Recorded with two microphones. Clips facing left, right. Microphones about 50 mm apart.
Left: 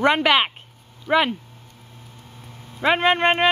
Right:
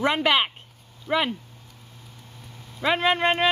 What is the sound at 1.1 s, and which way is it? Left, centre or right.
Speech, left.